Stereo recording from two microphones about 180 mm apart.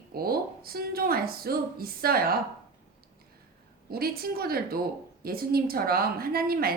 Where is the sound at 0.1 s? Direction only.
55° right (ahead or behind).